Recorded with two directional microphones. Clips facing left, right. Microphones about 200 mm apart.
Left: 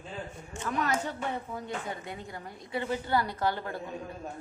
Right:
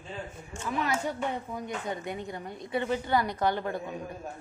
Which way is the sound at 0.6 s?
10° right (ahead or behind).